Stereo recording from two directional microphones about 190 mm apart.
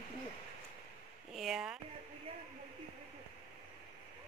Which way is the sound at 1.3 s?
Centre (ahead or behind).